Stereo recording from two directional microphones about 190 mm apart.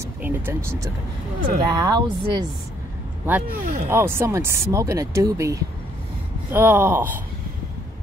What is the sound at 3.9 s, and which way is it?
Speech, 15° right (ahead or behind).